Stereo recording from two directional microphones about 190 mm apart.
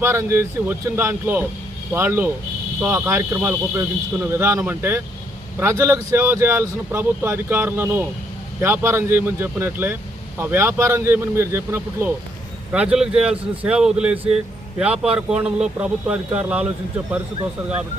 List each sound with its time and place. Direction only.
0.0 s a man's voice: 15° right (ahead or behind)